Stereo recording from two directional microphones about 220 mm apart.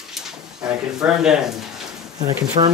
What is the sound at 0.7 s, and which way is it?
Speech, 5° right (ahead or behind).